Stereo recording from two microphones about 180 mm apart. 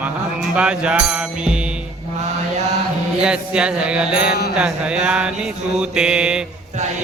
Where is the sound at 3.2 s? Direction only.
5° right (ahead or behind).